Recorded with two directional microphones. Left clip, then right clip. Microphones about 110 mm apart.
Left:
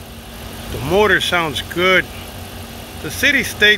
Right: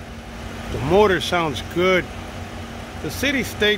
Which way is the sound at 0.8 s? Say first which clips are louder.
Left 3 dB; 15° right (ahead or behind).